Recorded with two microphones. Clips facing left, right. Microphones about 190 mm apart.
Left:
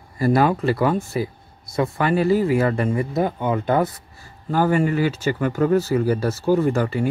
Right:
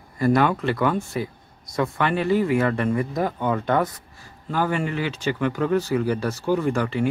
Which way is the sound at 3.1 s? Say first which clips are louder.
Left 2 dB; 5° left (ahead or behind).